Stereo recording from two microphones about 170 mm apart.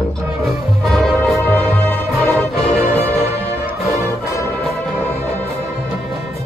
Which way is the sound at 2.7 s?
35° left (ahead or behind).